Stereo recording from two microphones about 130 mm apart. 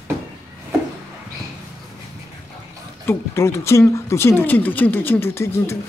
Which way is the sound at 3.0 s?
20° left (ahead or behind).